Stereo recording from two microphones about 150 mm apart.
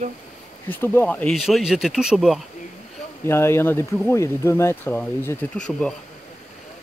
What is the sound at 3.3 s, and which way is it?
Speech, 15° left (ahead or behind).